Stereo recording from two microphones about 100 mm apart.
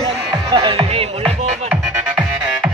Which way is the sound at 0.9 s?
75° right (ahead or behind).